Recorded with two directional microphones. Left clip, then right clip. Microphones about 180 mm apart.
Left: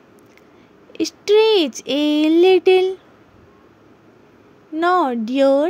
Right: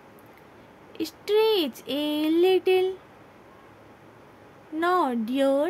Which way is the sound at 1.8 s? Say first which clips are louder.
Left 9 dB; 35° left (ahead or behind).